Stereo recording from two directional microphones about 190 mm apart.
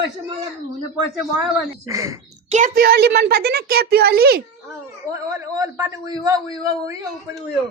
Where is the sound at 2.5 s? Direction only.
45° right (ahead or behind).